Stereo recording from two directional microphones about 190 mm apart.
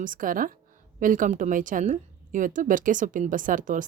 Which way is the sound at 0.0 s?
45° right (ahead or behind).